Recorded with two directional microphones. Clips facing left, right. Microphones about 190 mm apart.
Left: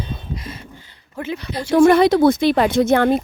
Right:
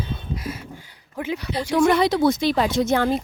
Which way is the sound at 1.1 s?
15° right (ahead or behind).